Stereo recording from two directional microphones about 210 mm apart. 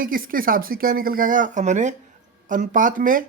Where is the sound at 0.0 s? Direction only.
40° right (ahead or behind).